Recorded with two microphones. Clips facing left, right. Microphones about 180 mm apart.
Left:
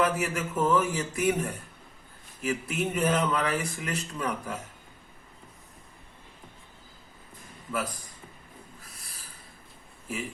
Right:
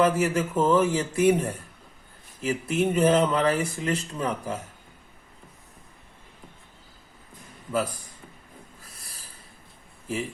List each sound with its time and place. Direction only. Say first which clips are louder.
0.0 s speech: right 5 dB; 30° right (ahead or behind)